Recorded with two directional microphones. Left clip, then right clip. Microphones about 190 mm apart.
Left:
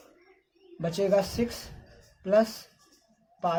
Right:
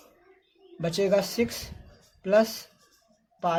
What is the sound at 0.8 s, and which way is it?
Speech, 25° right (ahead or behind).